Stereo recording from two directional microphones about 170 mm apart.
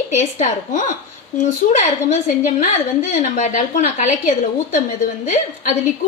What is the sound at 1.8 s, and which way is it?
A woman's voice, 40° left (ahead or behind).